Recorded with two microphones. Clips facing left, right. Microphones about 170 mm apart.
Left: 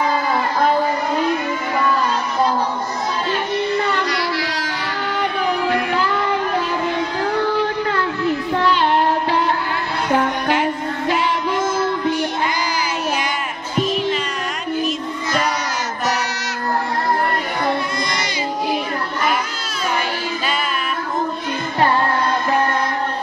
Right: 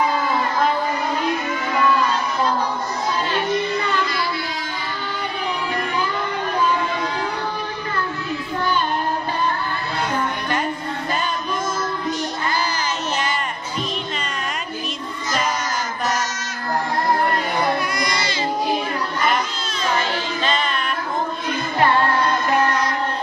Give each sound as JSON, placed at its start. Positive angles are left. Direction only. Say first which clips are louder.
{"t": 3.9, "sound": "child singing", "louder": "left 2 dB", "side_deg": 70}
{"t": 5.1, "sound": "music", "louder": "left 7 dB", "side_deg": 70}
{"t": 7.5, "sound": "a sound", "louder": "left 7 dB", "side_deg": 80}
{"t": 8.5, "sound": "child singing", "louder": "left 4 dB", "side_deg": 80}
{"t": 10.1, "sound": "music", "louder": "left 8 dB", "side_deg": 85}
{"t": 12.4, "sound": "a sound", "louder": "left 1 dB", "side_deg": 15}